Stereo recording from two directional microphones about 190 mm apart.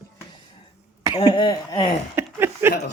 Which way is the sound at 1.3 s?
25° left (ahead or behind).